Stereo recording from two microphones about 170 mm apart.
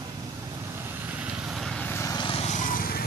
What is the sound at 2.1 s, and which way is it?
Vehicle, 30° left (ahead or behind).